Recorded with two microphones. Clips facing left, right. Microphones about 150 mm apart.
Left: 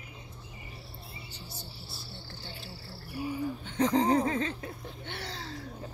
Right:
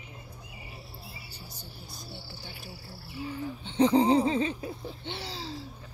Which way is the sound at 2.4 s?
15° right (ahead or behind).